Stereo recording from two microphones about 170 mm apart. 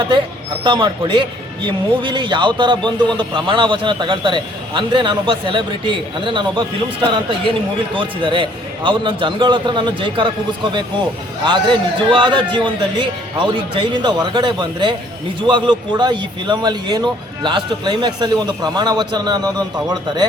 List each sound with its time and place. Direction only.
0.6 s a man's voice: 30° right (ahead or behind)